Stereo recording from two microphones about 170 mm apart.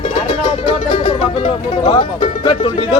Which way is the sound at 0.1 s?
25° left (ahead or behind).